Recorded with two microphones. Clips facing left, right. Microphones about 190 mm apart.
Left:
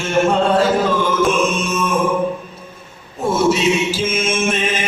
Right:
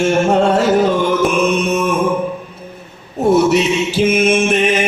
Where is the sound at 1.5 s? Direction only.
65° right (ahead or behind).